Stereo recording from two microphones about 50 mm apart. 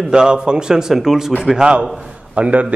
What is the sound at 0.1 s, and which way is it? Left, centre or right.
A man's voice, centre.